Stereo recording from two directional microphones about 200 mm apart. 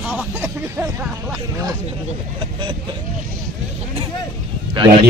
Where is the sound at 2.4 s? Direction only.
25° right (ahead or behind).